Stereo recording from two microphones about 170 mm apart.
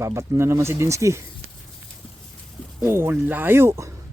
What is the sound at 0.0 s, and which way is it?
Speech, 15° right (ahead or behind).